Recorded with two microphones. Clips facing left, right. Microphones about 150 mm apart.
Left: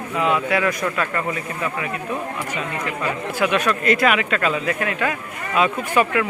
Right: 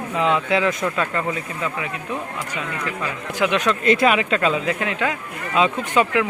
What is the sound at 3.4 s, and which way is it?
Speech, 20° right (ahead or behind).